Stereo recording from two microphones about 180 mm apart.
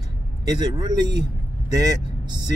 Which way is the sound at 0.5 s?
20° right (ahead or behind).